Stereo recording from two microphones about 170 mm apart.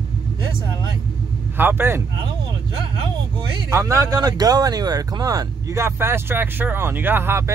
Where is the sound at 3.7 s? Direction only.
15° right (ahead or behind).